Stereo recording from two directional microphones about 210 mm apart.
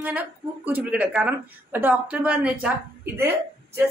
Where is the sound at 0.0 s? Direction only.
10° right (ahead or behind).